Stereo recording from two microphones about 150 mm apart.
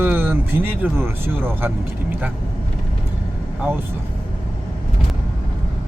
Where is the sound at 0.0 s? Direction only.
15° right (ahead or behind).